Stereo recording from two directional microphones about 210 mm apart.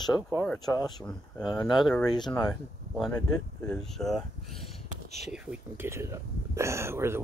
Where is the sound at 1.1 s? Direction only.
Centre (ahead or behind).